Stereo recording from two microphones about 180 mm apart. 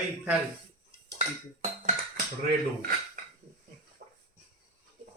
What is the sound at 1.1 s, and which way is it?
Dishes, 35° right (ahead or behind).